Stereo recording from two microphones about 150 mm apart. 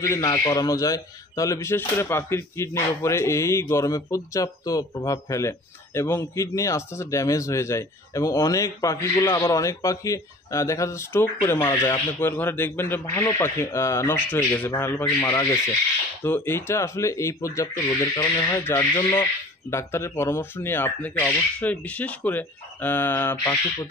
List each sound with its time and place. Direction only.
0.0 s speech: 20° left (ahead or behind)